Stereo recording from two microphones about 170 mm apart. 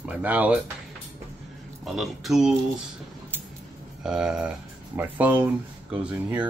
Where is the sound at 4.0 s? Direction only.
5° right (ahead or behind).